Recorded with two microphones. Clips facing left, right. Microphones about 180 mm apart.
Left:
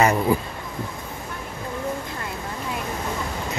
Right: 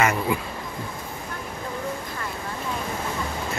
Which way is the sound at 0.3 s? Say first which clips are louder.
Left 4 dB; 35° left (ahead or behind).